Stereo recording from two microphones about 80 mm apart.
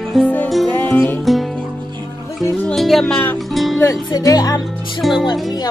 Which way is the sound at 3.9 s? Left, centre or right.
Left.